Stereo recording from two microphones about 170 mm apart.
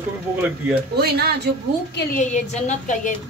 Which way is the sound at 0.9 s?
70° right (ahead or behind).